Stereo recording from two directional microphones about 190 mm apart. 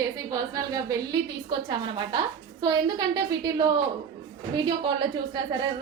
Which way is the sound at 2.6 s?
20° right (ahead or behind).